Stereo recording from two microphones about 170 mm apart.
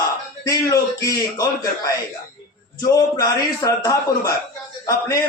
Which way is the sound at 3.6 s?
20° left (ahead or behind).